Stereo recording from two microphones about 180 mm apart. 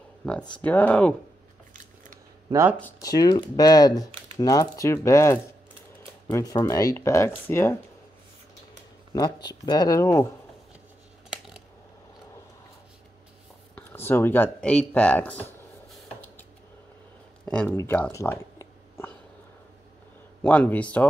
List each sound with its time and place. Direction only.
0.2 s speech: 5° left (ahead or behind)
3.0 s speech: 20° left (ahead or behind)
9.1 s speech: 20° left (ahead or behind)
13.7 s speech: 10° left (ahead or behind)
17.5 s a sound: 10° left (ahead or behind)
20.4 s speech: 10° left (ahead or behind)